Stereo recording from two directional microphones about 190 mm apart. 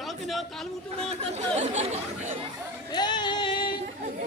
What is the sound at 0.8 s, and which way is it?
Speech, 30° right (ahead or behind).